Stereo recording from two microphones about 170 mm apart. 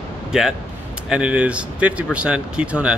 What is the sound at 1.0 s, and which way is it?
Speech, 5° right (ahead or behind).